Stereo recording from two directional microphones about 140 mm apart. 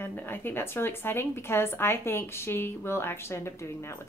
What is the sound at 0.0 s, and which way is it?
A woman's voice, 15° left (ahead or behind).